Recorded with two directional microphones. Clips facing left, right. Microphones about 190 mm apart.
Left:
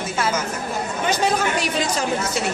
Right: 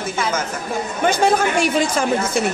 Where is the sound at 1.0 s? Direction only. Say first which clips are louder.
Right 5 dB; 50° right (ahead or behind).